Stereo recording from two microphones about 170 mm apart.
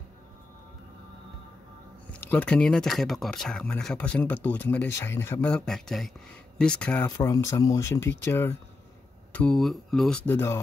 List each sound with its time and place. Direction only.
2.1 s speech: 10° left (ahead or behind)
7.1 s speech: 20° left (ahead or behind)